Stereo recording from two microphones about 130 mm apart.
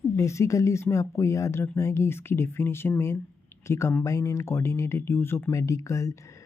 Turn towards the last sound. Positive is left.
turn(degrees=25)  # may be behind; listen again after turning